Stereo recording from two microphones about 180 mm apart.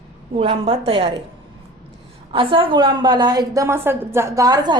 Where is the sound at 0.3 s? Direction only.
35° right (ahead or behind).